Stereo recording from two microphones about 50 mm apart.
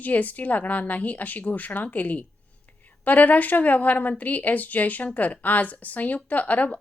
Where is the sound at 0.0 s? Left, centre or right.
Left.